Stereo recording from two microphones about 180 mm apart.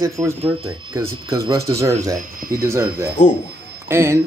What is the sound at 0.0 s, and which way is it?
Speech, 15° right (ahead or behind).